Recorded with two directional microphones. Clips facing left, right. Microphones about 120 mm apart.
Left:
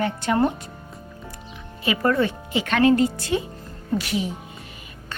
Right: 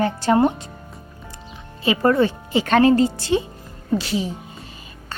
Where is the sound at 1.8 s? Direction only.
30° right (ahead or behind).